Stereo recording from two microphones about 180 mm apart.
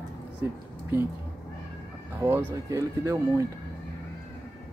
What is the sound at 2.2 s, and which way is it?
Speech, 10° right (ahead or behind).